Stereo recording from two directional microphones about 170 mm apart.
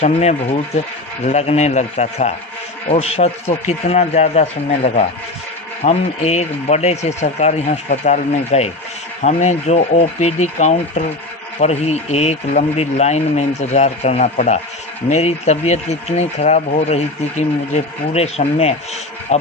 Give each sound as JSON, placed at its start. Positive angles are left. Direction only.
{"t": 0.0, "sound": "speech", "side_deg": 40}